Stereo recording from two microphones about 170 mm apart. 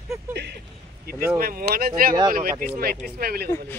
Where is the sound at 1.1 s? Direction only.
65° right (ahead or behind).